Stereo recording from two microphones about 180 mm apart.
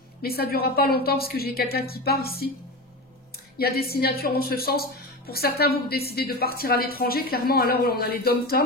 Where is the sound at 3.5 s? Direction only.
60° left (ahead or behind).